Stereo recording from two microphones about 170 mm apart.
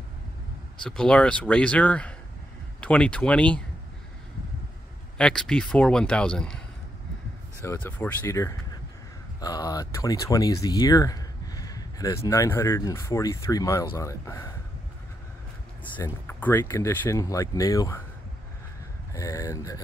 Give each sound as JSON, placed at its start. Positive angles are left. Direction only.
{"t": 0.8, "sound": "speech", "side_deg": 5}
{"t": 5.1, "sound": "speech", "side_deg": 5}
{"t": 7.6, "sound": "speech", "side_deg": 15}
{"t": 16.0, "sound": "speech", "side_deg": 10}
{"t": 19.1, "sound": "speech", "side_deg": 20}